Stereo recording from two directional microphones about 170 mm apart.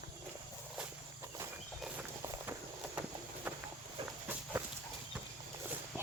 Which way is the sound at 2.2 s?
15° right (ahead or behind).